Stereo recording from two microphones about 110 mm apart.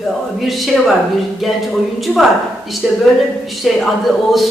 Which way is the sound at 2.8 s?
5° right (ahead or behind).